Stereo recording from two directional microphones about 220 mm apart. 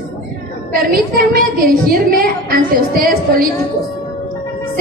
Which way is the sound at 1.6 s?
40° right (ahead or behind).